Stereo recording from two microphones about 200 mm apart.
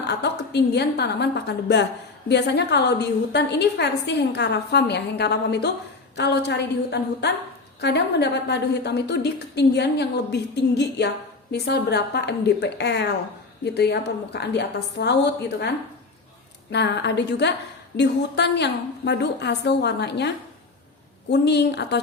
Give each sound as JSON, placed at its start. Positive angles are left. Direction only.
{"t": 0.1, "sound": "a woman's voice", "side_deg": 55}
{"t": 16.7, "sound": "a woman's voice", "side_deg": 60}